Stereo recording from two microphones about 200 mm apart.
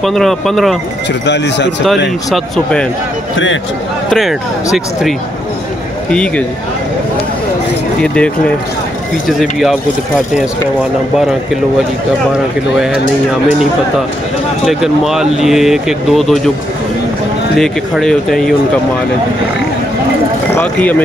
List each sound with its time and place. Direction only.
0.0 s speech: centre (ahead or behind)
1.2 s speech: 60° left (ahead or behind)
2.3 s speech: 5° left (ahead or behind)
4.1 s speech: centre (ahead or behind)
8.0 s a sound: 5° left (ahead or behind)
9.3 s speech: centre (ahead or behind)
14.7 s speech: centre (ahead or behind)
17.6 s speech: centre (ahead or behind)
20.5 s speech: 10° left (ahead or behind)